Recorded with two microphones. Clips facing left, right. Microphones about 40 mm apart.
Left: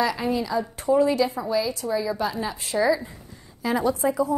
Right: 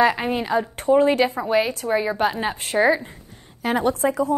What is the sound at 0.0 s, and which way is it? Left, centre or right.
A woman's voice, right.